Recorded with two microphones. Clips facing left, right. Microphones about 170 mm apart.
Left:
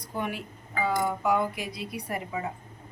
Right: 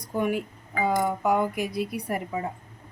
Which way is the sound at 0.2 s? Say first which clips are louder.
Right 7 dB; 50° right (ahead or behind).